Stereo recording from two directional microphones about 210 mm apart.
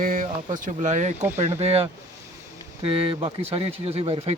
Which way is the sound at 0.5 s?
35° right (ahead or behind).